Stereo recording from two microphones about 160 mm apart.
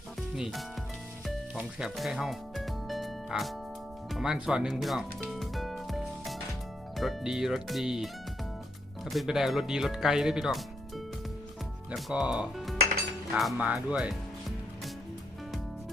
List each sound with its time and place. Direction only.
0.2 s music: centre (ahead or behind)
4.1 s speech: 5° right (ahead or behind)